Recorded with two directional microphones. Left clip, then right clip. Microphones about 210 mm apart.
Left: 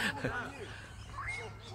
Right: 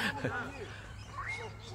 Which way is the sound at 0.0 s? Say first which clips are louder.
Even; centre (ahead or behind).